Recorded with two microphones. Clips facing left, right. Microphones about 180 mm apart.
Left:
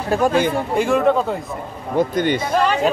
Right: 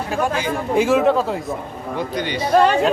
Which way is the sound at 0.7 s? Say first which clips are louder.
Right 1 dB; centre (ahead or behind).